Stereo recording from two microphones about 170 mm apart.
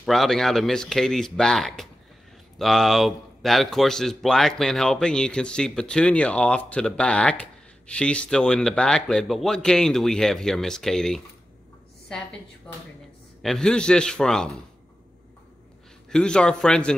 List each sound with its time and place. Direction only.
0.0 s a man's voice: centre (ahead or behind)
13.4 s a man's voice: 5° left (ahead or behind)
16.1 s a man's voice: 5° left (ahead or behind)